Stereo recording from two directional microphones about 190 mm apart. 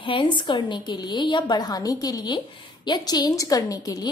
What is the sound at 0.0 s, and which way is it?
A woman's voice, 25° left (ahead or behind).